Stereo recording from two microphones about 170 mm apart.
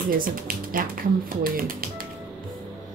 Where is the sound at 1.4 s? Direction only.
55° right (ahead or behind).